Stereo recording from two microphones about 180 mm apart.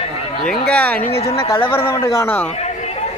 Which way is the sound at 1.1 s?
35° left (ahead or behind).